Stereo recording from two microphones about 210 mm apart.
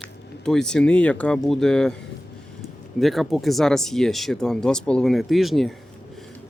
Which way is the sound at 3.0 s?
Centre (ahead or behind).